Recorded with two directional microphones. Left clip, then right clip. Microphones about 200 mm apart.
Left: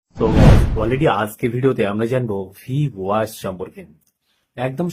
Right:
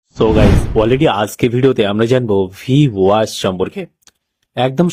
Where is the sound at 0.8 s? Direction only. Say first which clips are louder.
Right 8 dB; 40° right (ahead or behind).